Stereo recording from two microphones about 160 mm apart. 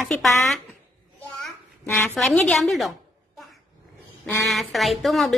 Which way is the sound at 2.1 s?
Centre (ahead or behind).